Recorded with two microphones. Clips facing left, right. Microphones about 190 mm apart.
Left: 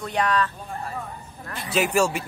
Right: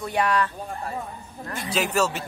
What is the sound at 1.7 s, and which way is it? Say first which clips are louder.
Speech: left 3 dB; 10° left (ahead or behind).